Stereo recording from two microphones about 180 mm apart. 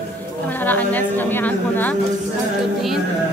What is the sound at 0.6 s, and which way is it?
A woman's voice, 10° left (ahead or behind).